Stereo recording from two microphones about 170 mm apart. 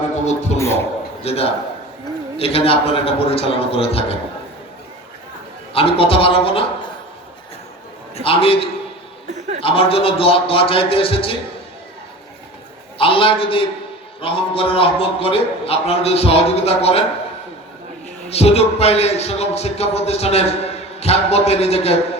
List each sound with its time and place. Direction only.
0.3 s a man's voice: 40° left (ahead or behind)
0.6 s a man's voice: 15° left (ahead or behind)
1.2 s a man's voice: 35° left (ahead or behind)
5.7 s a man's voice: 35° left (ahead or behind)
8.1 s a man's voice: 35° left (ahead or behind)
13.0 s a man's voice: 30° left (ahead or behind)
18.3 s a man's voice: 35° left (ahead or behind)